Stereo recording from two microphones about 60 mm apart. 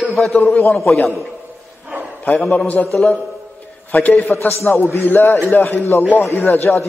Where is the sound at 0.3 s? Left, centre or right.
Left.